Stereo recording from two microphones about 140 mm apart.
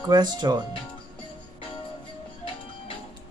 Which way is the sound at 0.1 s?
30° right (ahead or behind).